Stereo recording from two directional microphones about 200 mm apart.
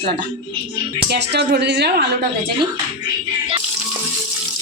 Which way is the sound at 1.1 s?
60° right (ahead or behind).